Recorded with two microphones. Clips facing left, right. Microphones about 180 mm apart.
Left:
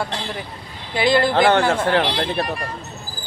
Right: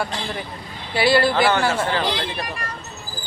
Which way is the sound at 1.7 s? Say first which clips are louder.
Left 3 dB; 70° left (ahead or behind).